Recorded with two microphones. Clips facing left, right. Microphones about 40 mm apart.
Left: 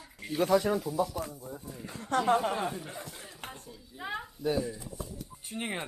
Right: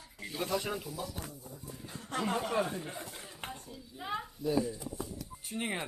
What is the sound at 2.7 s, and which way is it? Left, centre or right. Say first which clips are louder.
Speech: even; centre.